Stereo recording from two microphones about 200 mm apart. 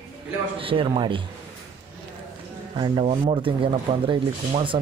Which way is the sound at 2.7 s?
25° right (ahead or behind).